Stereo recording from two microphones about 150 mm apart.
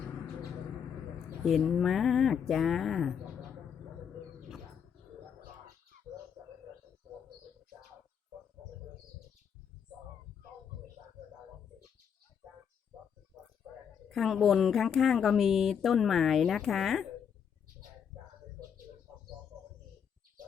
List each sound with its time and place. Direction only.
1.5 s speech: centre (ahead or behind)
6.1 s bird: 25° right (ahead or behind)
14.1 s speech: centre (ahead or behind)